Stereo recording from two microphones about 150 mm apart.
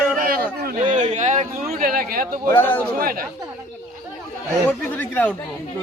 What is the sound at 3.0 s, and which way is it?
Speech, 75° right (ahead or behind).